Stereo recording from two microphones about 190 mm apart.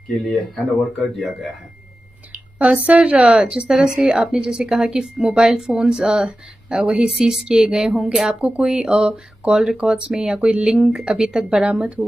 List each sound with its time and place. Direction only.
0.3 s speech: centre (ahead or behind)
2.6 s a woman's voice: 5° right (ahead or behind)